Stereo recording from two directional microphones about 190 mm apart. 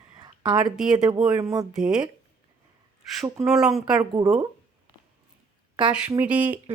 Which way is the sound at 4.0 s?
20° right (ahead or behind).